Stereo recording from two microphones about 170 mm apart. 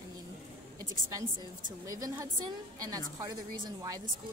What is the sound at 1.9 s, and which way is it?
Speech, 20° right (ahead or behind).